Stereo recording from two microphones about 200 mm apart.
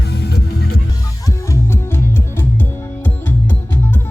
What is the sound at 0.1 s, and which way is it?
Music, 55° left (ahead or behind).